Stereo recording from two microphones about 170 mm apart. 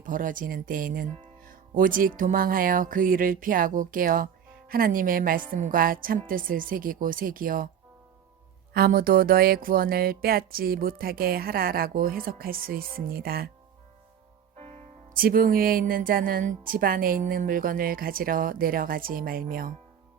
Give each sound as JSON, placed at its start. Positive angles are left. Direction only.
{"t": 0.0, "sound": "speech", "side_deg": -50}
{"t": 8.7, "sound": "speech", "side_deg": -60}
{"t": 14.5, "sound": "music", "side_deg": -40}
{"t": 15.1, "sound": "speech", "side_deg": -55}